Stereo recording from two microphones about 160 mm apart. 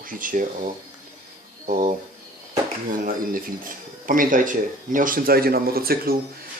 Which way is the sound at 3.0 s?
60° right (ahead or behind).